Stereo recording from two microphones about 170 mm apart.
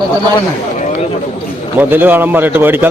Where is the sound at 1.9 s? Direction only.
10° right (ahead or behind).